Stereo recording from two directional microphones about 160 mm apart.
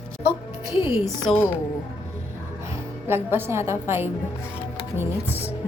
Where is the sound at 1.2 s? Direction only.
10° left (ahead or behind).